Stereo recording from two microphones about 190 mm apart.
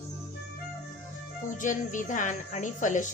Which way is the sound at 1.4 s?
40° left (ahead or behind).